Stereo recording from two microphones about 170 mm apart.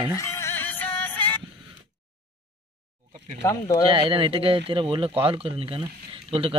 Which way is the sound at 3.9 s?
30° right (ahead or behind).